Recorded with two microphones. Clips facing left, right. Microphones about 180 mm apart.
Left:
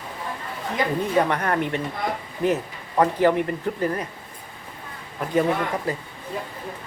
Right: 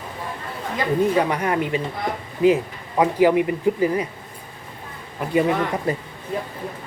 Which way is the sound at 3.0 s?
10° right (ahead or behind).